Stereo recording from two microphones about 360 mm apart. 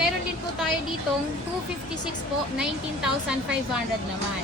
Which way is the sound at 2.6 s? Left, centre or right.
Centre.